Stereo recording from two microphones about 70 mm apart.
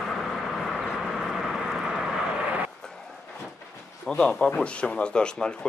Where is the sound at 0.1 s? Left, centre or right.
Centre.